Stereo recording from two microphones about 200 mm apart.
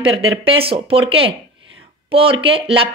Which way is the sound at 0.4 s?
30° right (ahead or behind).